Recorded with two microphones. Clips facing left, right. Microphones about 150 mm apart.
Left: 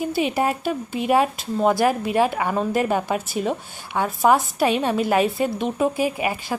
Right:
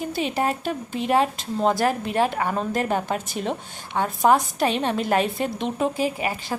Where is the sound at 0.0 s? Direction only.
10° left (ahead or behind).